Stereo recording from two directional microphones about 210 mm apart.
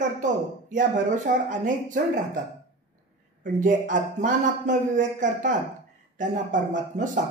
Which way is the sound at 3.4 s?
40° right (ahead or behind).